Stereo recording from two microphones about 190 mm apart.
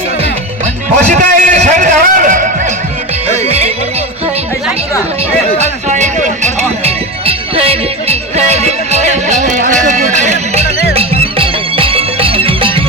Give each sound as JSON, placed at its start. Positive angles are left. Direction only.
{"t": 1.1, "sound": "music", "side_deg": -40}
{"t": 3.2, "sound": "music", "side_deg": -35}
{"t": 5.6, "sound": "music", "side_deg": -40}